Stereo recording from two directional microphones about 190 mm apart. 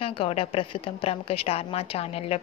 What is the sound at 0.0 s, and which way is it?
A woman's voice, 30° left (ahead or behind).